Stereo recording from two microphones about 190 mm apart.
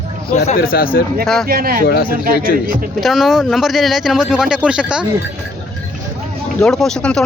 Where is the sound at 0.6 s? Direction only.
50° left (ahead or behind).